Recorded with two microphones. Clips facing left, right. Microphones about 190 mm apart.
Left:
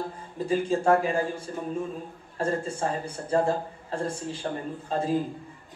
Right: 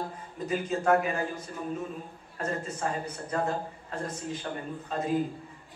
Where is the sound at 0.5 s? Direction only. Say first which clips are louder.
Left 3 dB; 30° left (ahead or behind).